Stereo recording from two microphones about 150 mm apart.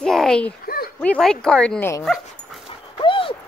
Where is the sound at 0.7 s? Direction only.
80° left.